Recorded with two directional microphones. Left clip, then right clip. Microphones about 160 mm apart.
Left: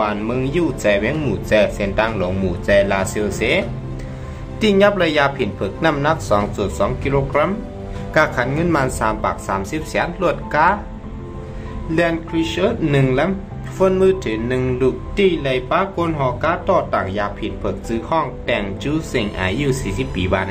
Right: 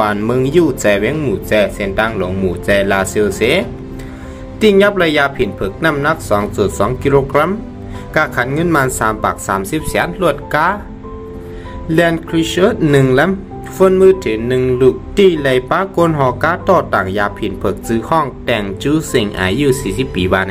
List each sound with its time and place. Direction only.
0.0 s speech: 30° right (ahead or behind)
1.2 s speech: 15° right (ahead or behind)
2.6 s speech: 20° right (ahead or behind)
6.5 s speech: 30° right (ahead or behind)
8.1 s speech: 20° right (ahead or behind)
11.9 s speech: 35° right (ahead or behind)
13.7 s speech: 20° right (ahead or behind)
15.1 s speech: 35° right (ahead or behind)